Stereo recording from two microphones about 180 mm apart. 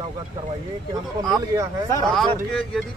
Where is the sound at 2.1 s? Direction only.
Centre (ahead or behind).